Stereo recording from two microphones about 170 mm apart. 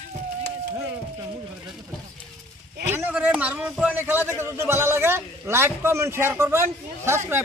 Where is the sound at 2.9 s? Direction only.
10° right (ahead or behind).